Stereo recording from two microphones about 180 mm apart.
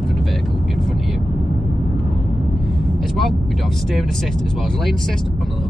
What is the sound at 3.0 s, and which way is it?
Speech, centre (ahead or behind).